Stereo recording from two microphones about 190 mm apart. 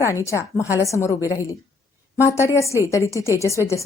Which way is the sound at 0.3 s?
15° left (ahead or behind).